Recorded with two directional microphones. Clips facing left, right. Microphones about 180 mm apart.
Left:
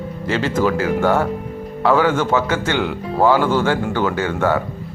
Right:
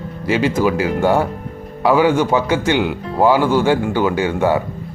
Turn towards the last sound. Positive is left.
turn(degrees=-15)  # may be behind; listen again after turning